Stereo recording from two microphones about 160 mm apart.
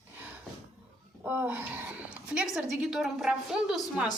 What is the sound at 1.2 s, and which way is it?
A woman's voice, 10° right (ahead or behind).